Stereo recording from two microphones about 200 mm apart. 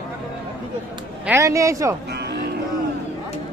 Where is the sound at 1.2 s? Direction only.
10° right (ahead or behind).